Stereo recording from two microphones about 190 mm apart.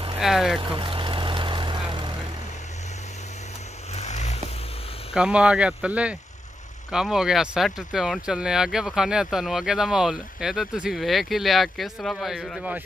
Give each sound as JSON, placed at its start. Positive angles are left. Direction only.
{"t": 0.2, "sound": "speech", "side_deg": 0}
{"t": 0.6, "sound": "vehicle", "side_deg": -25}
{"t": 3.9, "sound": "vehicle", "side_deg": 35}
{"t": 5.1, "sound": "speech", "side_deg": -5}